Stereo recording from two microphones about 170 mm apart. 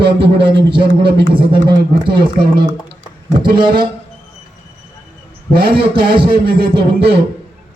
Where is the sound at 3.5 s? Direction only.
30° right (ahead or behind).